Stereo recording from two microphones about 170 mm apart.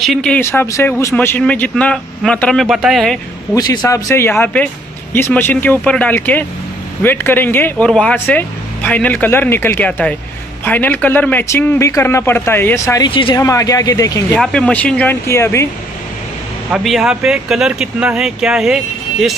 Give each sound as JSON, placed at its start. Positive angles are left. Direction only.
{"t": 0.0, "sound": "speech", "side_deg": 5}
{"t": 3.5, "sound": "speech", "side_deg": 20}
{"t": 13.1, "sound": "speech", "side_deg": 30}
{"t": 13.4, "sound": "speech", "side_deg": 20}
{"t": 14.3, "sound": "speech", "side_deg": 5}
{"t": 16.7, "sound": "speech", "side_deg": -5}